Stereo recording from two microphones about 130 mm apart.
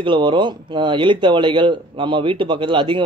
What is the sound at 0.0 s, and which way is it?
A man's voice, 40° right (ahead or behind).